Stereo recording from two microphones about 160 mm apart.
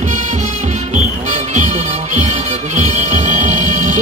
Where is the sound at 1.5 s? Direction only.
50° right (ahead or behind).